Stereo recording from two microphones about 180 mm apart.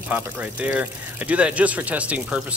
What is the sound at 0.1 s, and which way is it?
Speech, 5° right (ahead or behind).